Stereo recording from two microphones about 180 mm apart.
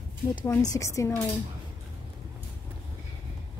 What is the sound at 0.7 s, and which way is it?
Speech, 15° left (ahead or behind).